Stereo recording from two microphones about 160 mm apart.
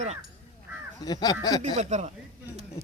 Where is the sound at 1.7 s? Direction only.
45° right (ahead or behind).